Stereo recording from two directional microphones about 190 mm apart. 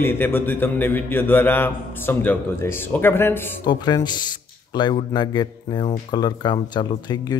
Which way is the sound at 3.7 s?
20° left (ahead or behind).